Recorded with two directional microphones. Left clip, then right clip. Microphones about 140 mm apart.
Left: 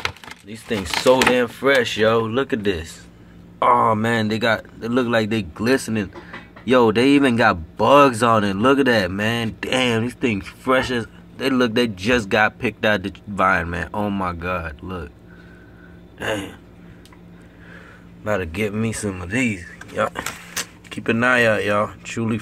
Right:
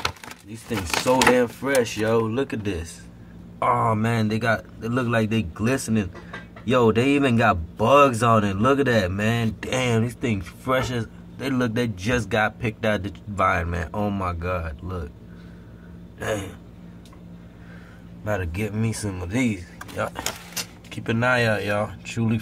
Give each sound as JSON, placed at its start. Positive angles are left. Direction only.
{"t": 0.5, "sound": "speech", "side_deg": 35}
{"t": 16.2, "sound": "speech", "side_deg": 20}
{"t": 18.2, "sound": "speech", "side_deg": 30}